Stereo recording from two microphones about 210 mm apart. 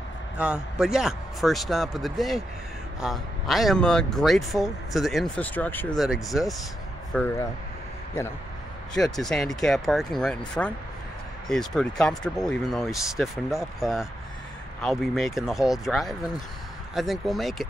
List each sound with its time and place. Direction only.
0.4 s speech: 5° right (ahead or behind)
8.9 s speech: centre (ahead or behind)